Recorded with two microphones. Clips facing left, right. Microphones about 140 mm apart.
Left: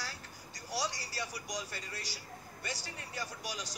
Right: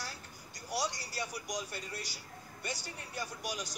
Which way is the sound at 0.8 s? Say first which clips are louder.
Right 1 dB; 55° right (ahead or behind).